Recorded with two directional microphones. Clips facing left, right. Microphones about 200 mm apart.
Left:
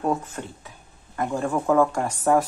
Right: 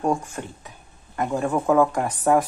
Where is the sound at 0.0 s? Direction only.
15° right (ahead or behind).